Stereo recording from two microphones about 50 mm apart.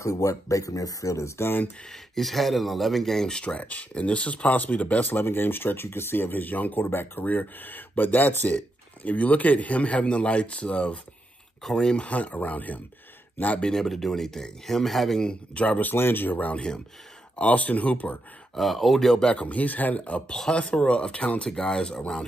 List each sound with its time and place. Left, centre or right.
0.0 s speech: left
1.9 s speech: centre
3.3 s a man's voice: left
5.1 s speech: left
9.0 s a man's voice: left
13.6 s speech: centre
15.1 s speech: centre
15.6 s a man's voice: left
15.9 s speech: left
18.6 s speech: centre
19.1 s a man's voice: centre
20.2 s a man's voice: centre
21.4 s speech: centre